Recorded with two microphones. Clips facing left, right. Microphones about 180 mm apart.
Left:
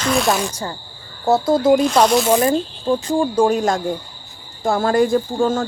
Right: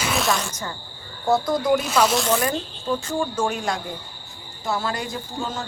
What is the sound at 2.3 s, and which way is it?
Speech, 25° left (ahead or behind).